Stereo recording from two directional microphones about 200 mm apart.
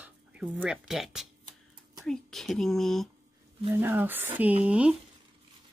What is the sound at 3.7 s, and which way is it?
Speech, 10° right (ahead or behind).